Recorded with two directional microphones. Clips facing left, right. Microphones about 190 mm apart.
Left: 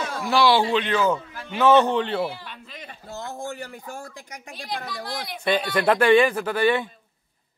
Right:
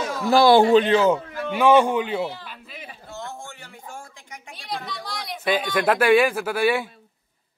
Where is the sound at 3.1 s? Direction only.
35° left (ahead or behind).